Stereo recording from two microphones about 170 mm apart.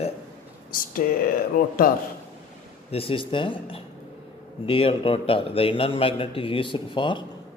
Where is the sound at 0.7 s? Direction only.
55° left (ahead or behind).